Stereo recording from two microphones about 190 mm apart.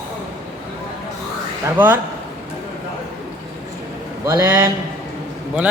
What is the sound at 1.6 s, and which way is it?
Speech, 10° right (ahead or behind).